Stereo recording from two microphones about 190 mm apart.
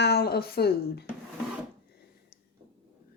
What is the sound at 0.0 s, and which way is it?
A woman's voice, 60° left (ahead or behind).